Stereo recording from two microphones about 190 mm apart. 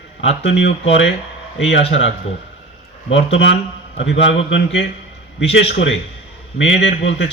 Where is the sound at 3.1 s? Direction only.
70° left (ahead or behind).